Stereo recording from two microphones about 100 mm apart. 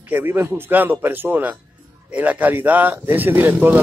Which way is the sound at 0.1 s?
20° right (ahead or behind).